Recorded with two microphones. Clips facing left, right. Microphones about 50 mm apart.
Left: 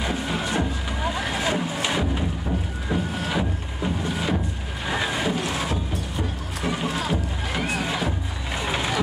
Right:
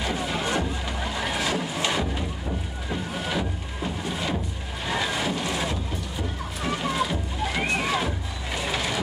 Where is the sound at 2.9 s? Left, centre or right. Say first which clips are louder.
Left 3 dB; centre.